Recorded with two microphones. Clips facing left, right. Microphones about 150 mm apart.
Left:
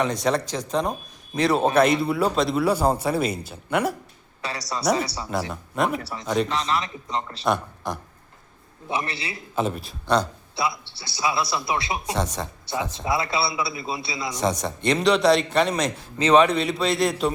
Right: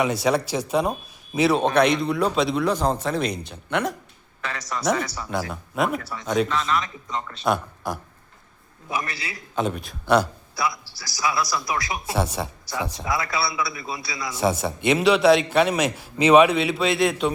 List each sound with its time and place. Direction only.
0.0 s a man's voice: 5° right (ahead or behind)
4.4 s a man's voice: 35° left (ahead or behind)
5.3 s a man's voice: centre (ahead or behind)
6.0 s a man's voice: 35° left (ahead or behind)
6.2 s a man's voice: centre (ahead or behind)
6.5 s a man's voice: 30° left (ahead or behind)
7.4 s a man's voice: centre (ahead or behind)
8.9 s a man's voice: 25° left (ahead or behind)
9.6 s a man's voice: centre (ahead or behind)
10.5 s a man's voice: 25° left (ahead or behind)
12.1 s speech: 10° right (ahead or behind)
12.9 s a man's voice: 25° left (ahead or behind)
14.3 s a man's voice: 5° right (ahead or behind)